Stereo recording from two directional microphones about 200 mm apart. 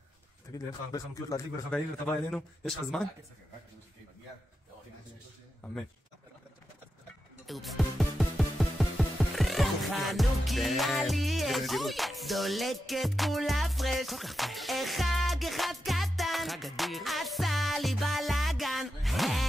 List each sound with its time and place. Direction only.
0.5 s speech: 15° left (ahead or behind)
1.7 s speech: 5° left (ahead or behind)
7.4 s music: centre (ahead or behind)